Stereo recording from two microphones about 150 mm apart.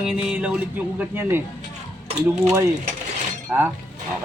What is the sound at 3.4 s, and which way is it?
Speech, 15° right (ahead or behind).